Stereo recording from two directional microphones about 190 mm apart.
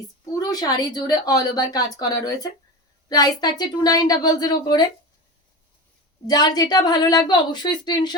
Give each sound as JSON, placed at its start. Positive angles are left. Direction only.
{"t": 0.3, "sound": "a woman's voice", "side_deg": 20}
{"t": 6.2, "sound": "a woman's voice", "side_deg": 20}